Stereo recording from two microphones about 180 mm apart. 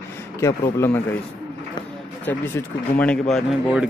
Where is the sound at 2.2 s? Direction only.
10° left (ahead or behind).